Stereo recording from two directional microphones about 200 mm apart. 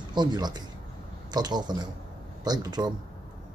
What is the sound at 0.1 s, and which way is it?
Speech, 20° right (ahead or behind).